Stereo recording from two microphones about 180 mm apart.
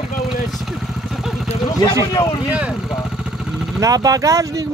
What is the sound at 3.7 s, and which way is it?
Speech, 20° right (ahead or behind).